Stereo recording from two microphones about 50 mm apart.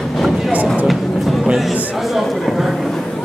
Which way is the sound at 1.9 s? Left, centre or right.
Centre.